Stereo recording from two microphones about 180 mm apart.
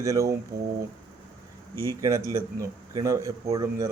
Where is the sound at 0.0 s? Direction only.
15° right (ahead or behind).